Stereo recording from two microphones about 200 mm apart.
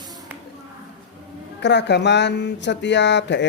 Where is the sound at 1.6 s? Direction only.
60° left (ahead or behind).